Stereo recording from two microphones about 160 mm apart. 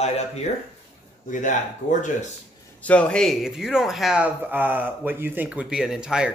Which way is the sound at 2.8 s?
10° left (ahead or behind).